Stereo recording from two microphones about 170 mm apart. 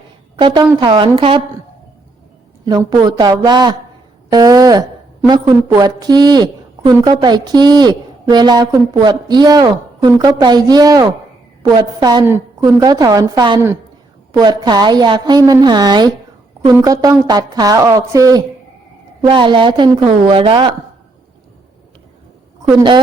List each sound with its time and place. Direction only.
0.3 s a woman's voice: 30° right (ahead or behind)
2.6 s a woman's voice: 25° right (ahead or behind)
22.7 s a woman's voice: 25° right (ahead or behind)